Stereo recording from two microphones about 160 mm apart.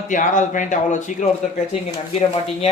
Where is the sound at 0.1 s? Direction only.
55° left (ahead or behind).